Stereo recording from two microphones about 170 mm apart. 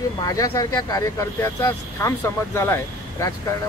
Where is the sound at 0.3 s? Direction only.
20° left (ahead or behind).